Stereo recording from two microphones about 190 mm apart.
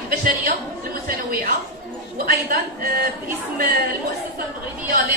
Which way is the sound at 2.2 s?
50° right (ahead or behind).